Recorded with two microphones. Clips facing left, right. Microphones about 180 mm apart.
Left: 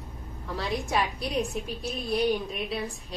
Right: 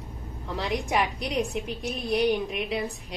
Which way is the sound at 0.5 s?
20° right (ahead or behind).